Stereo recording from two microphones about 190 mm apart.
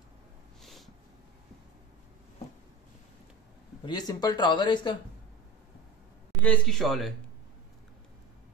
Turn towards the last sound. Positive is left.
turn(degrees=0)  # may be behind; listen again after turning